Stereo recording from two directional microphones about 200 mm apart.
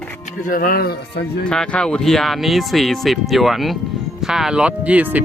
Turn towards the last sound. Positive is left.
turn(degrees=-5)  # may be behind; listen again after turning